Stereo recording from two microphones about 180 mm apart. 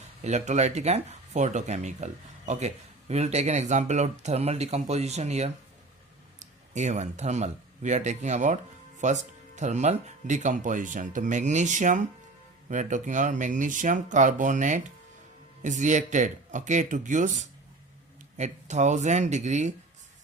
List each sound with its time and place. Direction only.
0.2 s speech: 40° right (ahead or behind)